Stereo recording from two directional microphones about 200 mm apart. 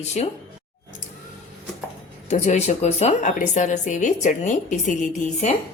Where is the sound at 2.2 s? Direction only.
35° left (ahead or behind).